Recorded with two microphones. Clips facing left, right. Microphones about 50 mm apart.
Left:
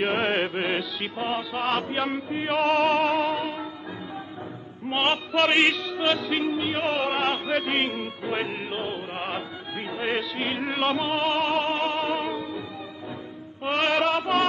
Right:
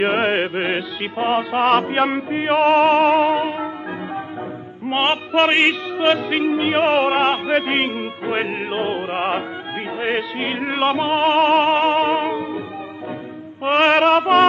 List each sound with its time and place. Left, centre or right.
0.0 s music: right
1.5 s music: right
2.3 s music: right
2.9 s music: right
3.3 s music: right
4.8 s music: right
6.5 s music: right
7.2 s music: right
8.5 s music: right
9.9 s music: right
12.3 s music: right
13.7 s music: right